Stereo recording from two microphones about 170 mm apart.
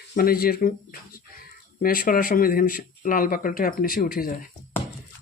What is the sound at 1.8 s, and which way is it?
Speech, 55° left (ahead or behind).